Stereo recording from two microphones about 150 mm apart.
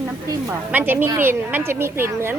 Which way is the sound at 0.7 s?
10° right (ahead or behind).